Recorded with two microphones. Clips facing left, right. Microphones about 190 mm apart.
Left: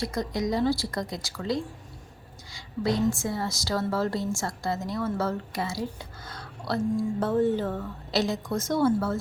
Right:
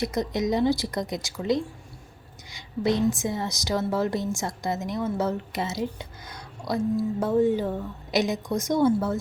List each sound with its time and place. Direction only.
0.0 s a woman's voice: 20° right (ahead or behind)